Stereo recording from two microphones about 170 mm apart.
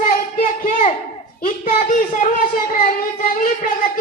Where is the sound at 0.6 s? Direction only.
55° left (ahead or behind).